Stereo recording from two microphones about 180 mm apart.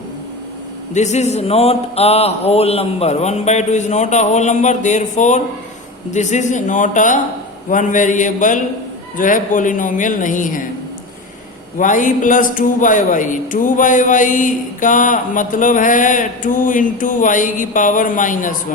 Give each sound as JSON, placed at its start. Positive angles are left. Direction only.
{"t": 0.9, "sound": "a man's voice", "side_deg": 40}
{"t": 11.8, "sound": "a man's voice", "side_deg": 45}